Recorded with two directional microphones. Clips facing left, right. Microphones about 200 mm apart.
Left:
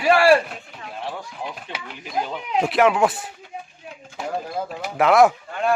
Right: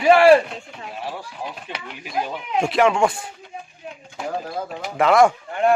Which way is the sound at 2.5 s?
Centre (ahead or behind).